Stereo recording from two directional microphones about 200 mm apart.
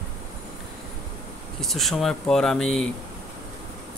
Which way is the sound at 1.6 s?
Centre (ahead or behind).